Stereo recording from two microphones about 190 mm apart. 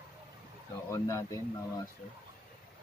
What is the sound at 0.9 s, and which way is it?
Speech, 15° left (ahead or behind).